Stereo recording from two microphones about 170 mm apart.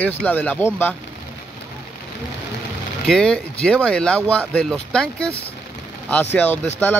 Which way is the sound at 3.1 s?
5° left (ahead or behind).